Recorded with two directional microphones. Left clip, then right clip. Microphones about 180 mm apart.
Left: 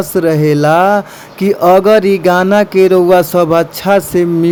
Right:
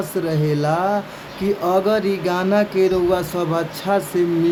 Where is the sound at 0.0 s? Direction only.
50° left (ahead or behind).